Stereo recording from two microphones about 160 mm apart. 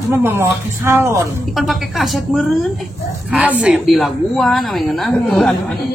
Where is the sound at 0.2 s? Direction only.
15° right (ahead or behind).